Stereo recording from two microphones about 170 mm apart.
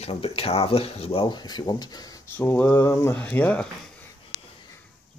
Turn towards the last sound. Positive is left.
turn(degrees=10)  # may be behind; listen again after turning